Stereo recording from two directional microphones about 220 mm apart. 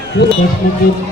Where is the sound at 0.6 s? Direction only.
40° left (ahead or behind).